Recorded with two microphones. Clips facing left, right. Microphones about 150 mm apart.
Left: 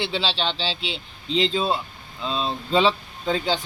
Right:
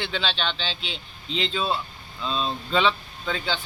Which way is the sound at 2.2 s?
20° left (ahead or behind).